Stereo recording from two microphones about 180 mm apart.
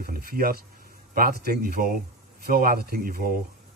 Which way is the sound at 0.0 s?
55° right (ahead or behind).